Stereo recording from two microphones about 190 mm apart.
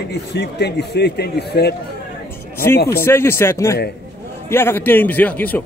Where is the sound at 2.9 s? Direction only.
15° left (ahead or behind).